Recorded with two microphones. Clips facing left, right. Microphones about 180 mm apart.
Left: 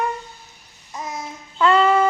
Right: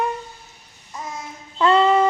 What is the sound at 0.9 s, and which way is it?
Child singing, 20° left (ahead or behind).